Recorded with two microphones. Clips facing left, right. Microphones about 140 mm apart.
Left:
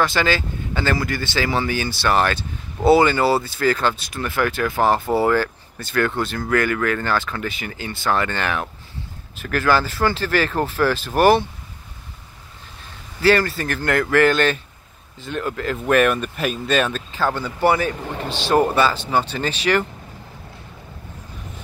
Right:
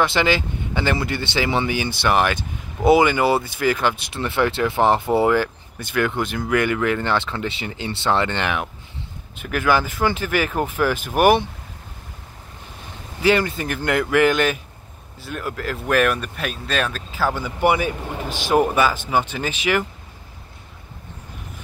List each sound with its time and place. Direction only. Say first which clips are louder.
0.0 s speech: right 1 dB; 20° right (ahead or behind)
13.2 s speech: left 1 dB; 20° right (ahead or behind)